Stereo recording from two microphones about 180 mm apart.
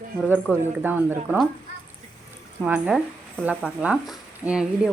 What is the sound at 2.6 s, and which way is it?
Speech, 5° right (ahead or behind).